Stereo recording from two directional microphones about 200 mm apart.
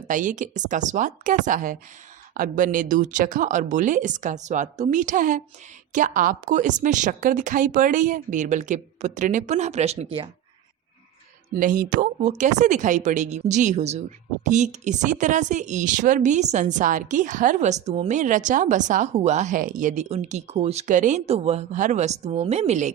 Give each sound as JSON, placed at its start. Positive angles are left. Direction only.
{"t": 0.1, "sound": "speech", "side_deg": -40}
{"t": 11.5, "sound": "speech", "side_deg": -40}